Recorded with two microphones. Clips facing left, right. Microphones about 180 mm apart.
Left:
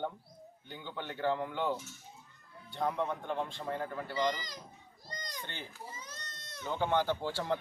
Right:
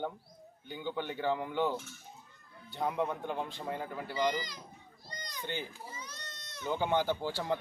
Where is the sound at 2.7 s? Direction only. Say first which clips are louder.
Right 1 dB; 5° right (ahead or behind).